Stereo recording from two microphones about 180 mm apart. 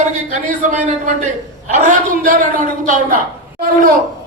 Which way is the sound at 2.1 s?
50° right (ahead or behind).